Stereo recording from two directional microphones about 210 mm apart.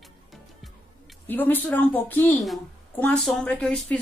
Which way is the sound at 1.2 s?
10° left (ahead or behind).